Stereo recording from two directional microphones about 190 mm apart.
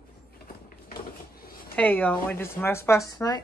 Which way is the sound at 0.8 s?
50° left (ahead or behind).